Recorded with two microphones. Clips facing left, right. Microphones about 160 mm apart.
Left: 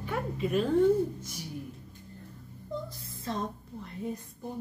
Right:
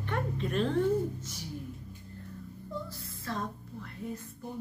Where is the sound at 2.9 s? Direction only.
20° left (ahead or behind).